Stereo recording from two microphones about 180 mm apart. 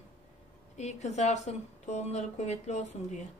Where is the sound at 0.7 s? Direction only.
40° left (ahead or behind).